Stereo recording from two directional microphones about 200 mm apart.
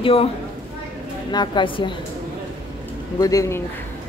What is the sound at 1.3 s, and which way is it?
Speech, 20° left (ahead or behind).